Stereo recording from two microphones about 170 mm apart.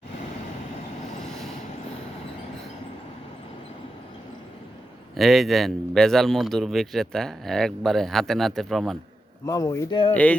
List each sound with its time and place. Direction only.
5.1 s speech: centre (ahead or behind)
9.5 s speech: 20° left (ahead or behind)